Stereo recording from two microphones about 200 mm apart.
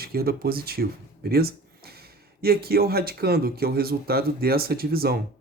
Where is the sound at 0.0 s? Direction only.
50° right (ahead or behind).